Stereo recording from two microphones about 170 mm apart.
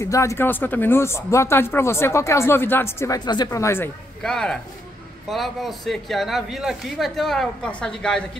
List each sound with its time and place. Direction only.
0.0 s speech: 15° left (ahead or behind)
4.2 s speech: 5° left (ahead or behind)